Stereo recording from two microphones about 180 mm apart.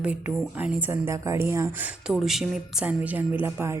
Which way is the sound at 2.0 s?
Centre (ahead or behind).